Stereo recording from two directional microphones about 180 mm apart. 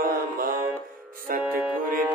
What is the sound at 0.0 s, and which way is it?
Mantra, 50° right (ahead or behind).